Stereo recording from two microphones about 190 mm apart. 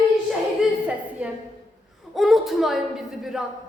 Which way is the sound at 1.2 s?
5° right (ahead or behind).